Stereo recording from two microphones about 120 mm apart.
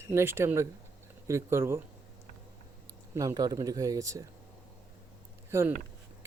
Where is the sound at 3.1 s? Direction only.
30° right (ahead or behind).